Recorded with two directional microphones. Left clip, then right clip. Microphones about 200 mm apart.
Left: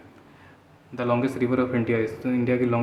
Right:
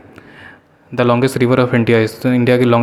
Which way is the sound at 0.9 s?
40° right (ahead or behind).